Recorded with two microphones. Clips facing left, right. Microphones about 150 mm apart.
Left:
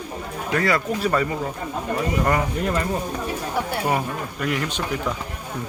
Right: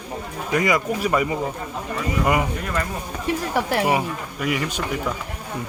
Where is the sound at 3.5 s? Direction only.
90° right.